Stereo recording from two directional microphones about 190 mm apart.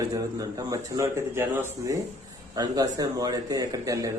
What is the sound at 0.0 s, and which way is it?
A man's voice, 15° right (ahead or behind).